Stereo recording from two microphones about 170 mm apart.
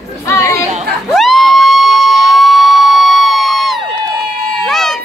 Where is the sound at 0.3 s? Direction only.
15° left (ahead or behind).